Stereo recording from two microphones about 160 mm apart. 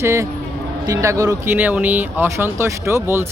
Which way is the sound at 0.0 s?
15° right (ahead or behind).